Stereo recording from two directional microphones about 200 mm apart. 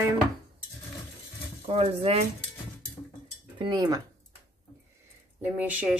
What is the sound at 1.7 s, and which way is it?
Speech, 30° right (ahead or behind).